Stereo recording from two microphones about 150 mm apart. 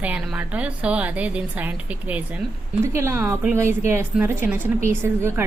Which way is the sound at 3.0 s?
15° right (ahead or behind).